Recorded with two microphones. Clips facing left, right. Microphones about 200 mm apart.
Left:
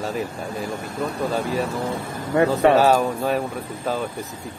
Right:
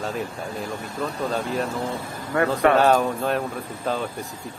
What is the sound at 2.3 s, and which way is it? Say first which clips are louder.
Speech: left 4 dB; 20° left (ahead or behind).